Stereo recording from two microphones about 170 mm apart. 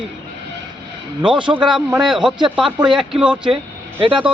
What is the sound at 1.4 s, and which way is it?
Speech, 30° right (ahead or behind).